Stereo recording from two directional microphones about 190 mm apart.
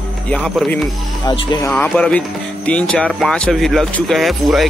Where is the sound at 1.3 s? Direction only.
25° left (ahead or behind).